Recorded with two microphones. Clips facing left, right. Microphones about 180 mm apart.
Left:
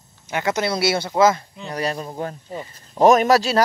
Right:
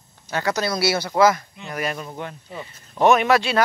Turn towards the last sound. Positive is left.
turn(degrees=40)  # may be behind; listen again after turning